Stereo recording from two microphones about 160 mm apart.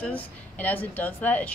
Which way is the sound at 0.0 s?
10° left (ahead or behind).